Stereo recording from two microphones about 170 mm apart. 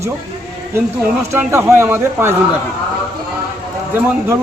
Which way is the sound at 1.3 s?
15° right (ahead or behind).